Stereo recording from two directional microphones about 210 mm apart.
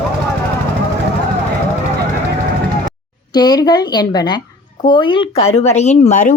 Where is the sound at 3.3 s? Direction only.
20° left (ahead or behind); by 6.3 s 35° left (ahead or behind).